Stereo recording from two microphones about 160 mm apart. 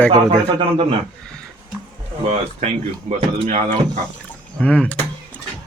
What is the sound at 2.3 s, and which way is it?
Speech, 45° right (ahead or behind).